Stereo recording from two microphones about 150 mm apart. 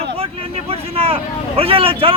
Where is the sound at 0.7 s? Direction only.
40° right (ahead or behind).